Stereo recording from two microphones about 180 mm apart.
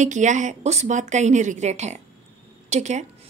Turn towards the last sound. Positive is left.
turn(degrees=-40)  # may be behind; listen again after turning